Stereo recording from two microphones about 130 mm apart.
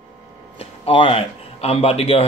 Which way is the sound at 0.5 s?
45° left (ahead or behind).